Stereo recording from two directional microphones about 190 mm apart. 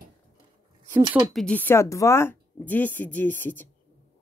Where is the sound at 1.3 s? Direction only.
5° left (ahead or behind).